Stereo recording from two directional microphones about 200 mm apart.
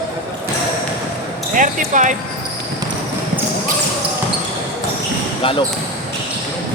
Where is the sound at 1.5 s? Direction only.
40° right (ahead or behind).